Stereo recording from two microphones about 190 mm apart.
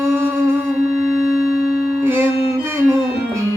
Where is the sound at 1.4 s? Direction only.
50° left (ahead or behind).